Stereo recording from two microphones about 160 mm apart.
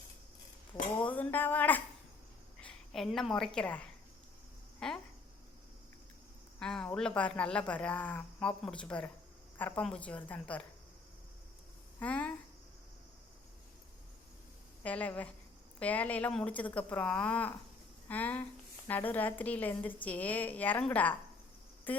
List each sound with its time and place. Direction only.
1.0 s a woman's voice: 10° left (ahead or behind)
4.8 s a sound: 5° left (ahead or behind)
6.6 s a man's voice: 5° left (ahead or behind)
11.9 s a woman's voice: 10° left (ahead or behind)
14.8 s a woman's voice: 10° left (ahead or behind)
21.9 s cricket: 10° left (ahead or behind)